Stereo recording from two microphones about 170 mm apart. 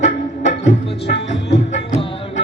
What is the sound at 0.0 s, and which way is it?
Music, 45° left (ahead or behind).